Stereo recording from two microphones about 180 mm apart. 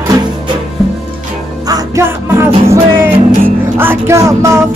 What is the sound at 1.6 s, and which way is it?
Music, 20° right (ahead or behind).